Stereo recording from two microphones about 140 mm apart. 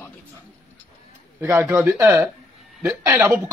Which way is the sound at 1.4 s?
15° right (ahead or behind).